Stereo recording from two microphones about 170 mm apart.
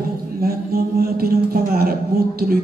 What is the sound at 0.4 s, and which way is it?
Mantra, 60° right (ahead or behind).